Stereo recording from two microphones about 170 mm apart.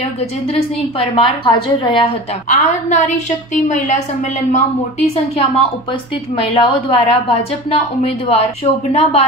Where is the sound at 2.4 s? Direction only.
45° left (ahead or behind).